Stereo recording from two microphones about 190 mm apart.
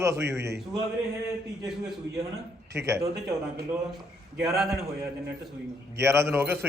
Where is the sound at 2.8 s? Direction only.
15° right (ahead or behind).